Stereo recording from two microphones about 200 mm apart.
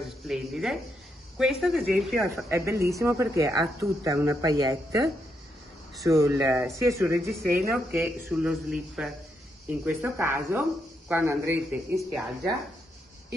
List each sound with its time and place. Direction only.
0.3 s speech: centre (ahead or behind)
2.3 s speech: 15° right (ahead or behind)